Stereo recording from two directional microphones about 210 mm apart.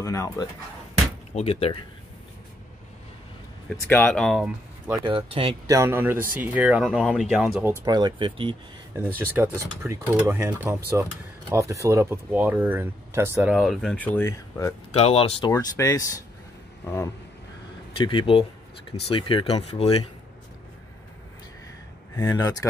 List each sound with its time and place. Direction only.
0.0 s speech: 15° left (ahead or behind)
1.3 s speech: 30° left (ahead or behind)
3.9 s speech: 5° left (ahead or behind)
5.0 s speech: 25° right (ahead or behind); by 7.7 s 5° right (ahead or behind)
7.8 s speech: 20° right (ahead or behind)
8.9 s speech: 10° right (ahead or behind); by 14.7 s 10° left (ahead or behind)
14.9 s speech: 30° left (ahead or behind)
15.5 s speech: 15° left (ahead or behind)
16.8 s a sound: 10° left (ahead or behind)
17.9 s speech: 25° left (ahead or behind)
22.1 s speech: 15° left (ahead or behind)